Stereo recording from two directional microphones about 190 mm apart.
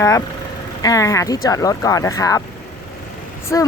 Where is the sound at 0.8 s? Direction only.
15° left (ahead or behind).